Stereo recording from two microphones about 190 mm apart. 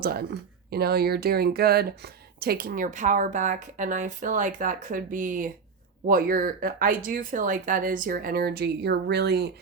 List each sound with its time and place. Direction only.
0.0 s speech: 55° right (ahead or behind)